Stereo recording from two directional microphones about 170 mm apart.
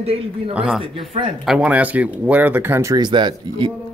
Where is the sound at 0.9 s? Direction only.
30° right (ahead or behind).